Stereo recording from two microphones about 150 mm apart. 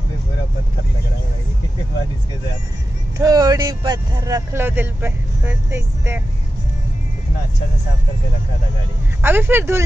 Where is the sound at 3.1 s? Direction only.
25° right (ahead or behind).